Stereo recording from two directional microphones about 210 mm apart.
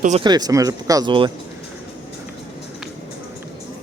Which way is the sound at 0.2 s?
20° right (ahead or behind).